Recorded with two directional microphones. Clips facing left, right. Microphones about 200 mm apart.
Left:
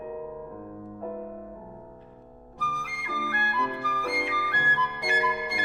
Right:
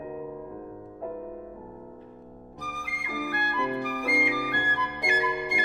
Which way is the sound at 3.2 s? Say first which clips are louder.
Right 2 dB; 15° right (ahead or behind).